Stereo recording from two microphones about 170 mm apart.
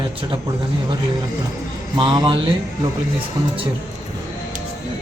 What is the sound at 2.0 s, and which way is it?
Speech, 25° right (ahead or behind).